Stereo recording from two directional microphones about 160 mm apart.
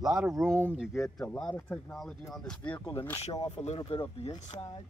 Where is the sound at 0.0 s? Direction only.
5° right (ahead or behind).